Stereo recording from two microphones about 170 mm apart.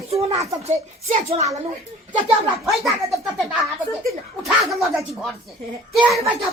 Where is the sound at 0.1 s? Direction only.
35° right (ahead or behind).